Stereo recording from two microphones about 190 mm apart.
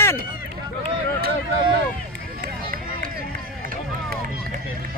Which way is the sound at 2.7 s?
50° right (ahead or behind).